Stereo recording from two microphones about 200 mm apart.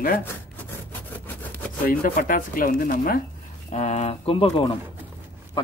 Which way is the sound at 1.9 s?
40° left (ahead or behind).